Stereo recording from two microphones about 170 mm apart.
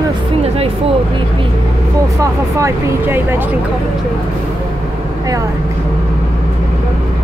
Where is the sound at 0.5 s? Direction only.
35° right (ahead or behind).